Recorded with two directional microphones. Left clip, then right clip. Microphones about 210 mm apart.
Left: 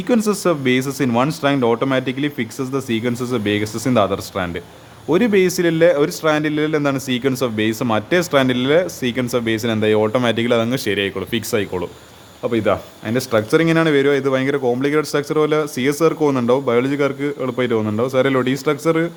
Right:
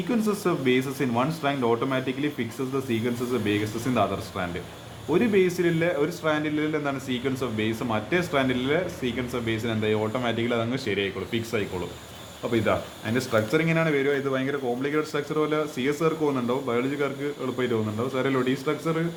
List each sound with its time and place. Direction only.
0.1 s speech: 45° left (ahead or behind)